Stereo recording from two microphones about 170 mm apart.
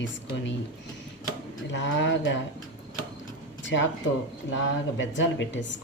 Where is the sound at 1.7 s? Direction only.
90° left.